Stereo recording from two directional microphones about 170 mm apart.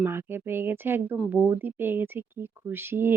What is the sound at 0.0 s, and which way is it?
Speech, 15° right (ahead or behind).